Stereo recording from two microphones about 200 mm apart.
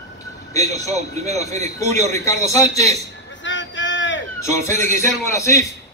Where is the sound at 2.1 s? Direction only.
15° left (ahead or behind).